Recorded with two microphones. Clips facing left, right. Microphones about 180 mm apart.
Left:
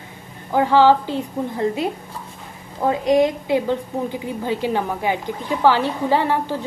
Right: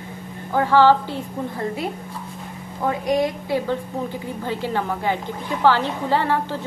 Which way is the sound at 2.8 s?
25° left (ahead or behind).